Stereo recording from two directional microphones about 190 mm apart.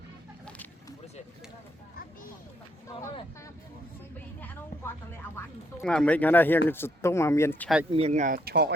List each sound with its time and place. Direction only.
4.4 s a sound: 10° left (ahead or behind)
6.7 s speech: 10° left (ahead or behind)
7.9 s speech: 30° right (ahead or behind); by 8.7 s 55° right (ahead or behind)